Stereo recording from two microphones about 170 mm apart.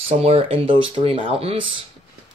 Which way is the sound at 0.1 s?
40° right (ahead or behind).